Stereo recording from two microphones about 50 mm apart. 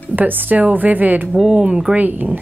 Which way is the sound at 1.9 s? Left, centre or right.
Right.